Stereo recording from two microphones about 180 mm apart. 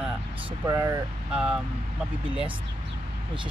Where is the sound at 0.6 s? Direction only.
20° right (ahead or behind).